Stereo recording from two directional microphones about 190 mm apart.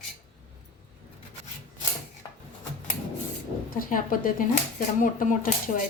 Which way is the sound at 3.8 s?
45° left (ahead or behind).